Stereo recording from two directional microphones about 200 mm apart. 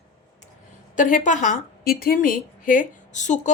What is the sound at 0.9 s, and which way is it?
A woman's voice, 40° left (ahead or behind).